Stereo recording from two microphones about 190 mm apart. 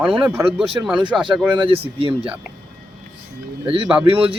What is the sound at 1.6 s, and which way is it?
Speech, 30° right (ahead or behind).